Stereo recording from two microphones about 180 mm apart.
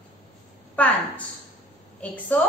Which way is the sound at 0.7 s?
10° left (ahead or behind).